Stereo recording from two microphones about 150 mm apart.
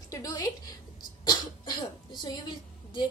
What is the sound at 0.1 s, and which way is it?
Speech, 25° left (ahead or behind).